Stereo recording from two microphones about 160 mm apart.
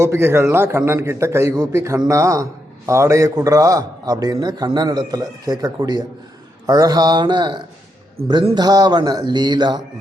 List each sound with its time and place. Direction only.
0.0 s a man's voice: 15° right (ahead or behind)